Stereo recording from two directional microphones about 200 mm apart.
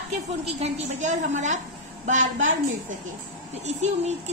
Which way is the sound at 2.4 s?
75° right (ahead or behind).